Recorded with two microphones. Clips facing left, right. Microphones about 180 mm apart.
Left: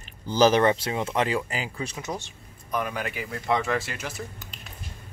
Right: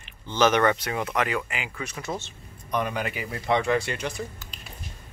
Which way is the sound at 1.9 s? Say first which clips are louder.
Right 1 dB; 15° left (ahead or behind).